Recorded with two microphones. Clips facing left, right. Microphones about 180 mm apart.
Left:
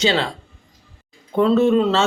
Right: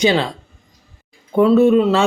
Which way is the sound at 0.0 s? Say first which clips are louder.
Right 4 dB; 15° right (ahead or behind).